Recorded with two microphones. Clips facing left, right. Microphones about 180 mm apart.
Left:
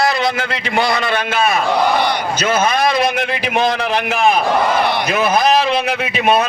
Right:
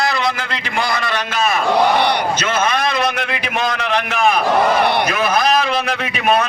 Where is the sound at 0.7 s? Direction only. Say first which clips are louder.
Left 4 dB; 30° left (ahead or behind).